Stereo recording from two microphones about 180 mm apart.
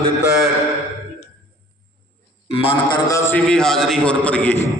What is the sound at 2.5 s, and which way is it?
Speech, 30° left (ahead or behind).